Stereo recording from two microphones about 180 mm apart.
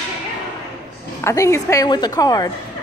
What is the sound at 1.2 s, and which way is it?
A woman's voice, 15° left (ahead or behind).